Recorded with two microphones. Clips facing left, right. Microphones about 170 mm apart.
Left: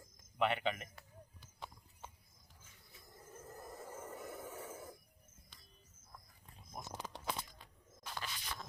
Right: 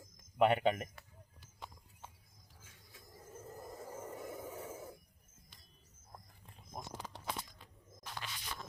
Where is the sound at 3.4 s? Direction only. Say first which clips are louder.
Right 2 dB; 10° right (ahead or behind).